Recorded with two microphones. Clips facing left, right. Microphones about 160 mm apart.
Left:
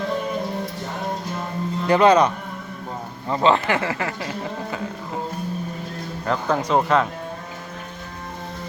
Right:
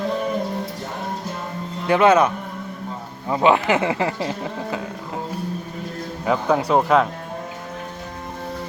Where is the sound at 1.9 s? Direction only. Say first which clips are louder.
Even; 5° right (ahead or behind); by 4.3 s 25° right (ahead or behind).